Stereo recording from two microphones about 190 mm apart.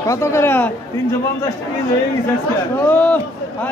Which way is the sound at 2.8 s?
10° left (ahead or behind).